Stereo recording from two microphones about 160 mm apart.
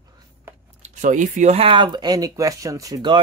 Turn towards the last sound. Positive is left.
turn(degrees=-20)  # may be behind; listen again after turning